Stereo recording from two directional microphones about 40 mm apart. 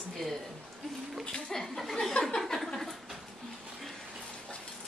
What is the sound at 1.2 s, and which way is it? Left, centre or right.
Speech, left.